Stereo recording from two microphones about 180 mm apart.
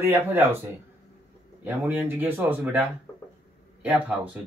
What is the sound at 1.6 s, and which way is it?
Speech, 10° right (ahead or behind).